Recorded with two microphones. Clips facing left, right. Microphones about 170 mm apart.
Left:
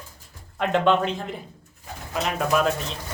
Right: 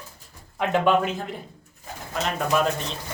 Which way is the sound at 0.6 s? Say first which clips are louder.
Even; 10° right (ahead or behind).